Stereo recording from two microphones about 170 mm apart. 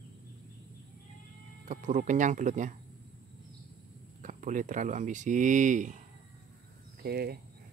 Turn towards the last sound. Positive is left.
turn(degrees=-65)  # may be behind; listen again after turning